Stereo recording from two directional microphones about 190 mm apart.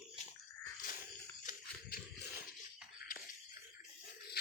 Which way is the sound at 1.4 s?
50° left (ahead or behind).